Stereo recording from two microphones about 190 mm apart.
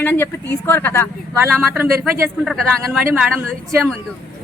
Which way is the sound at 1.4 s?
10° right (ahead or behind).